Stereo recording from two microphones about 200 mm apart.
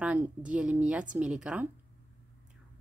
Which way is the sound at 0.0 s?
5° right (ahead or behind).